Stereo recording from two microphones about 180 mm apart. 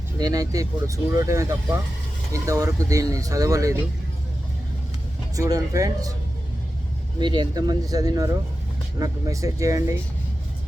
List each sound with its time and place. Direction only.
0.2 s speech: 20° right (ahead or behind)
5.4 s speech: 20° right (ahead or behind)
7.2 s speech: 25° right (ahead or behind)